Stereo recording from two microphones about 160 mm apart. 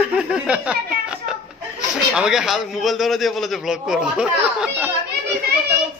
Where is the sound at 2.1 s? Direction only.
5° right (ahead or behind).